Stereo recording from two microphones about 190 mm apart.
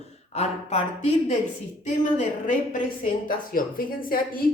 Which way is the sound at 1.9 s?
40° left (ahead or behind).